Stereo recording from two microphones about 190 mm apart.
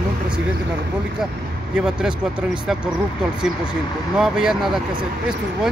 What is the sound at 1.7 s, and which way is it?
Speech, 5° right (ahead or behind).